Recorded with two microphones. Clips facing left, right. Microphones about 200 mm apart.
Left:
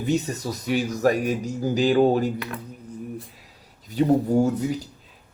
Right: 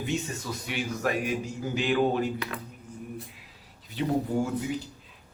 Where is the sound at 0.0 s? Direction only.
40° left (ahead or behind).